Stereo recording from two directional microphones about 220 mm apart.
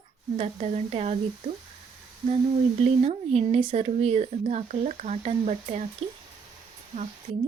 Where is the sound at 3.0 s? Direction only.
30° right (ahead or behind).